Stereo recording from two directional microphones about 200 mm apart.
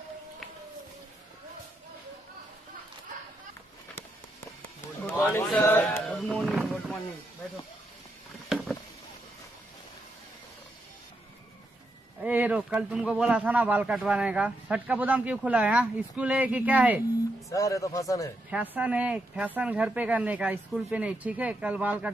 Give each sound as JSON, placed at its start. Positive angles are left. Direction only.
{"t": 5.1, "sound": "a sound", "side_deg": 10}
{"t": 8.5, "sound": "rowboat", "side_deg": 0}
{"t": 12.2, "sound": "speech", "side_deg": -5}
{"t": 17.5, "sound": "a man's voice", "side_deg": 15}
{"t": 18.5, "sound": "speech", "side_deg": -5}